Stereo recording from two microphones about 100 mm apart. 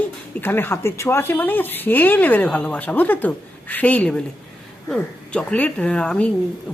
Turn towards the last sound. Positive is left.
turn(degrees=10)  # may be behind; listen again after turning